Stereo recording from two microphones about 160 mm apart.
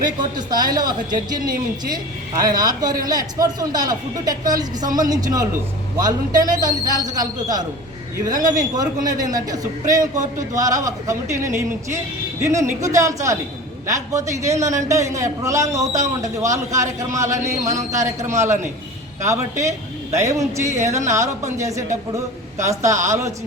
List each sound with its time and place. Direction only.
0.0 s a man's voice: 25° right (ahead or behind)
17.6 s a man's voice: 50° right (ahead or behind)
17.9 s a man's voice: 20° right (ahead or behind)